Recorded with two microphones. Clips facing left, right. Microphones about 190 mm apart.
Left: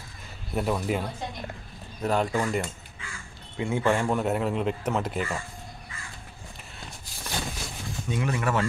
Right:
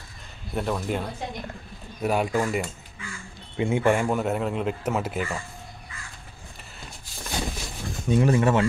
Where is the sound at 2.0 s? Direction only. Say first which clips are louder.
Right 2 dB; 10° right (ahead or behind).